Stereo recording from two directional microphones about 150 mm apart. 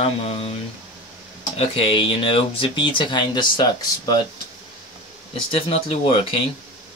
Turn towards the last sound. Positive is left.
turn(degrees=40)  # may be behind; listen again after turning